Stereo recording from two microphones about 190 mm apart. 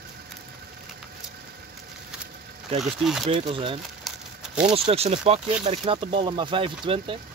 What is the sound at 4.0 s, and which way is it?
Crumpling, 5° right (ahead or behind).